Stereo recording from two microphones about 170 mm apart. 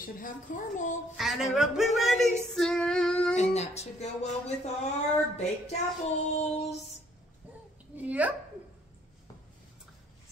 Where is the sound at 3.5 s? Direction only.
40° left (ahead or behind).